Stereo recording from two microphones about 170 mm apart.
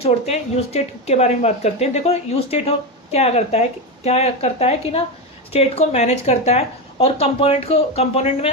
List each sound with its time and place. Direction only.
0.0 s a woman's voice: 40° left (ahead or behind)